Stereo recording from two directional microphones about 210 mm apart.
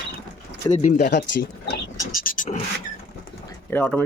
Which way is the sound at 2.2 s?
40° left (ahead or behind).